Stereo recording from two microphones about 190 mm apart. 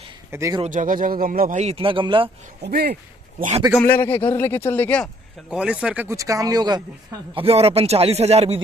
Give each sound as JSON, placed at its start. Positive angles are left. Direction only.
{"t": 0.3, "sound": "speech", "side_deg": -15}
{"t": 0.7, "sound": "speech", "side_deg": -45}
{"t": 1.6, "sound": "speech", "side_deg": -30}
{"t": 2.6, "sound": "speech", "side_deg": -55}
{"t": 3.7, "sound": "a man's voice", "side_deg": 10}
{"t": 5.5, "sound": "speech", "side_deg": -5}